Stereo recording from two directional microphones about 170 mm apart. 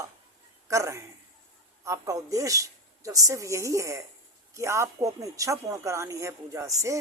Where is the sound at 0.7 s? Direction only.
15° right (ahead or behind).